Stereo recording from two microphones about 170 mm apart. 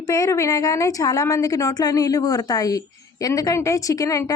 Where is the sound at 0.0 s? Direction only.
20° left (ahead or behind).